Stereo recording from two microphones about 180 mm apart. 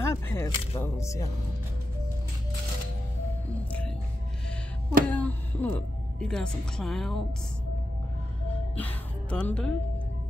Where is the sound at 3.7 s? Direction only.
5° left (ahead or behind).